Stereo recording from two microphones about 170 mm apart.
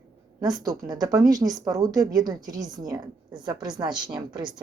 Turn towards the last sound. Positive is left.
turn(degrees=-25)  # may be behind; listen again after turning